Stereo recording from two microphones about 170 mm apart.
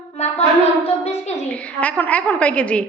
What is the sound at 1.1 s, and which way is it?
Speech, 10° left (ahead or behind).